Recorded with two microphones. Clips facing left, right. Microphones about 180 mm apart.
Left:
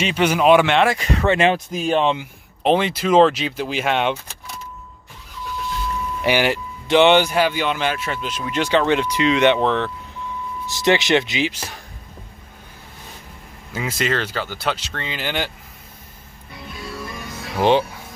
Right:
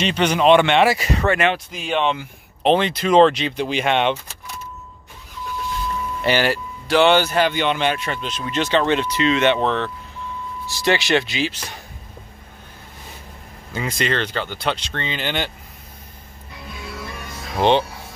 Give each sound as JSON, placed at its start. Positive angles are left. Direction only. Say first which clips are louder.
{"t": 0.0, "sound": "speech", "louder": "even", "side_deg": 10}
{"t": 1.5, "sound": "speech", "louder": "left 4 dB", "side_deg": 40}
{"t": 2.6, "sound": "speech", "louder": "even", "side_deg": 10}
{"t": 6.2, "sound": "speech", "louder": "even", "side_deg": 15}
{"t": 10.7, "sound": "speech", "louder": "left 2 dB", "side_deg": 20}
{"t": 13.7, "sound": "speech", "louder": "even", "side_deg": 5}